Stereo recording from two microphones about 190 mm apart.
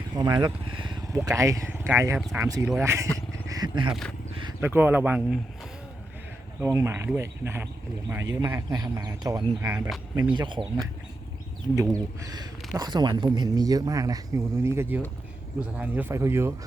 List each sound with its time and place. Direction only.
0.1 s speech: 20° right (ahead or behind)
3.5 s wild animals: 25° right (ahead or behind)
4.6 s speech: 10° right (ahead or behind)
6.6 s speech: 15° right (ahead or behind)
10.2 s speech: 25° right (ahead or behind)
11.7 s speech: 20° right (ahead or behind)